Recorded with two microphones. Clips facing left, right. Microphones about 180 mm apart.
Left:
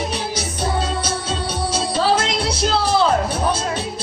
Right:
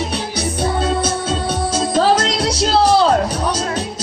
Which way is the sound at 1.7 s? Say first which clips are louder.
Right 4 dB; 45° right (ahead or behind).